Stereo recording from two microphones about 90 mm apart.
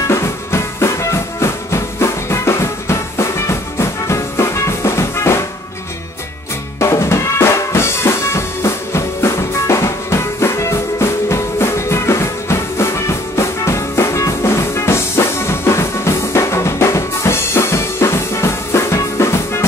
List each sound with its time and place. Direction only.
0.1 s music: 30° left (ahead or behind)
6.8 s music: 30° left (ahead or behind)